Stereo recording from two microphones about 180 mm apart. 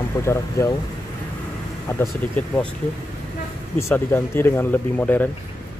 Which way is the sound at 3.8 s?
15° left (ahead or behind).